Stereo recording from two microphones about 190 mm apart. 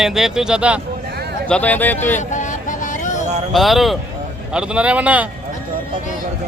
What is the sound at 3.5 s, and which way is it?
A man's voice, centre (ahead or behind).